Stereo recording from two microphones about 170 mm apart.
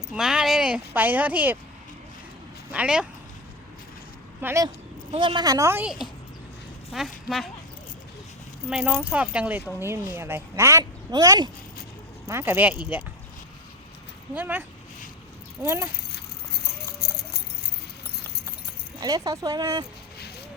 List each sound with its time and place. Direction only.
0.1 s speech: 5° right (ahead or behind)
2.7 s speech: 5° right (ahead or behind)
4.4 s speech: 15° right (ahead or behind)
5.1 s a woman's voice: 30° right (ahead or behind)
6.9 s speech: centre (ahead or behind)
8.7 s a woman's voice: centre (ahead or behind)
14.3 s speech: 10° right (ahead or behind)
15.6 s speech: 15° right (ahead or behind)
17.0 s a sound: 70° left (ahead or behind)
18.9 s a woman's voice: 20° right (ahead or behind)